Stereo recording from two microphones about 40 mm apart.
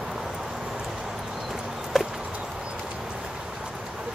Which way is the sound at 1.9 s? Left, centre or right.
Centre.